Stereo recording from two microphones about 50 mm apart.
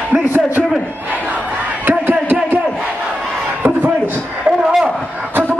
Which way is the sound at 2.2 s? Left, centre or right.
Right.